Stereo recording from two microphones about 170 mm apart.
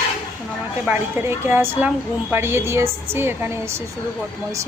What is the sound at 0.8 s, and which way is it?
A woman's voice, 10° right (ahead or behind).